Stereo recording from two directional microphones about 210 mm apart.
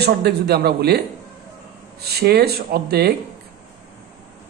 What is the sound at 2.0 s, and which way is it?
A man's voice, 50° right (ahead or behind).